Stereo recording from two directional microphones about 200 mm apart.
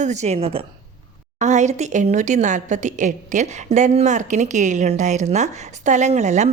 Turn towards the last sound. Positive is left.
turn(degrees=-35)  # may be behind; listen again after turning